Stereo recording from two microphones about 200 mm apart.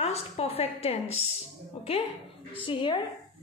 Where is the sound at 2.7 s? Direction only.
25° left (ahead or behind).